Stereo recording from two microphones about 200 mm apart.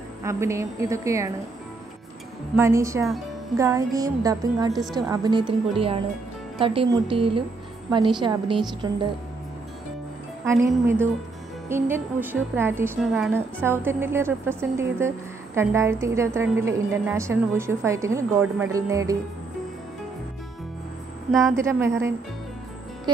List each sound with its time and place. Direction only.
0.2 s a woman's voice: 15° right (ahead or behind)
2.5 s a woman's voice: 15° right (ahead or behind)
10.4 s a woman's voice: 15° right (ahead or behind)
13.0 s a woman's voice: centre (ahead or behind)
13.3 s a woman's voice: 10° right (ahead or behind)
21.3 s a woman's voice: centre (ahead or behind)
21.5 s a woman's voice: 15° right (ahead or behind)